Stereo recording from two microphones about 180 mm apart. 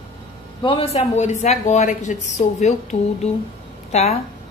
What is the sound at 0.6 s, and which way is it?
A woman's voice, 30° left (ahead or behind).